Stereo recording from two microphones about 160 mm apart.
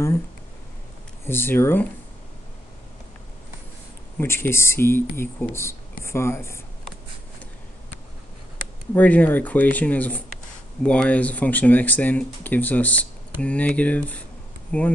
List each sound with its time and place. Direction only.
1.2 s speech: 15° left (ahead or behind)
4.2 s speech: 15° left (ahead or behind)
8.9 s speech: 10° left (ahead or behind)